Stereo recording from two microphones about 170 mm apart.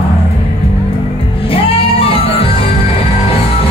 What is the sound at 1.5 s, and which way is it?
Music, 35° left (ahead or behind).